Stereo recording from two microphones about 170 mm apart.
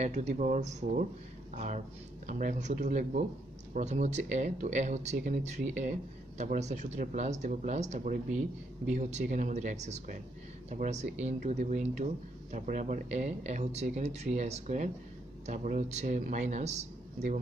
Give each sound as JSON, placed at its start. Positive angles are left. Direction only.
{"t": 0.0, "sound": "speech", "side_deg": -45}